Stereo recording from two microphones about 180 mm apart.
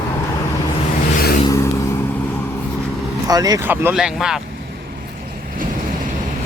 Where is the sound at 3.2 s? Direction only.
20° right (ahead or behind); by 4.3 s 5° right (ahead or behind).